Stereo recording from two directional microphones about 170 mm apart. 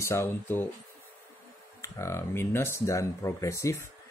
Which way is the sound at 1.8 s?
15° left (ahead or behind).